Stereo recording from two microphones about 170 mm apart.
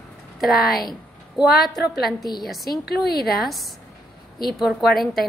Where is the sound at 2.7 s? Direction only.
70° left (ahead or behind).